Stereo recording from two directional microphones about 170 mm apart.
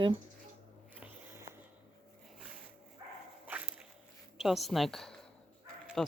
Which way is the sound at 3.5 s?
10° right (ahead or behind).